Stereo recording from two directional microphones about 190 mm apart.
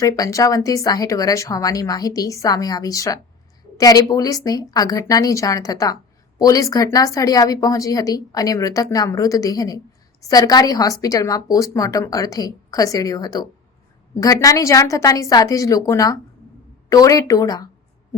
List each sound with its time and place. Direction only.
0.0 s speech: 15° left (ahead or behind)